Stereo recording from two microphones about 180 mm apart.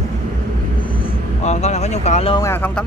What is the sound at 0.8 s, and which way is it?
Vehicle, 35° left (ahead or behind).